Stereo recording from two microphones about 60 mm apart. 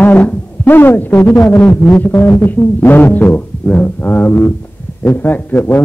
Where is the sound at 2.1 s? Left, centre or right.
Left.